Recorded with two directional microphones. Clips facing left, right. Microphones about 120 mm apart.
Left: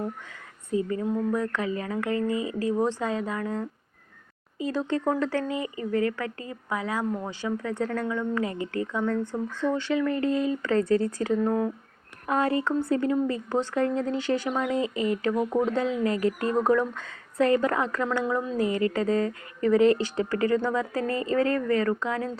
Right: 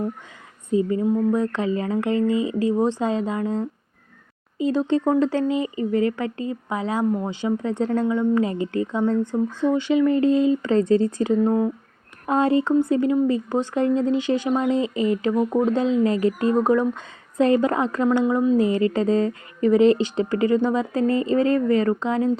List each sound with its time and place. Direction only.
0.7 s speech: 20° right (ahead or behind)